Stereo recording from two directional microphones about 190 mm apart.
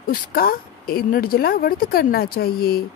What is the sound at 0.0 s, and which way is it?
Speech, 50° left (ahead or behind).